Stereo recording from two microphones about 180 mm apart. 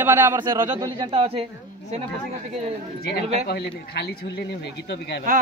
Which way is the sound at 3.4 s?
65° left (ahead or behind).